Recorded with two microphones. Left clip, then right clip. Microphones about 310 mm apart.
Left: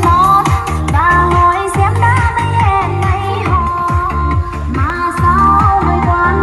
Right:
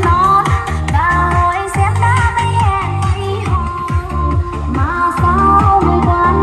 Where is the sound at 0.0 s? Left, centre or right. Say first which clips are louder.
Left 2 dB; left.